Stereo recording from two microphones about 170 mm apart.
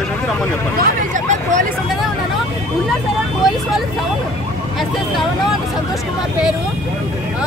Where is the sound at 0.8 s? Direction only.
50° right (ahead or behind).